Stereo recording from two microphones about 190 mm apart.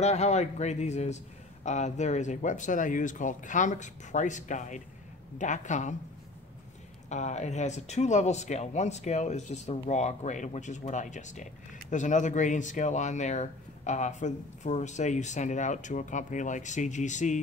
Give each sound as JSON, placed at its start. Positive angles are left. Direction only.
{"t": 0.0, "sound": "speech", "side_deg": 35}
{"t": 7.1, "sound": "speech", "side_deg": 35}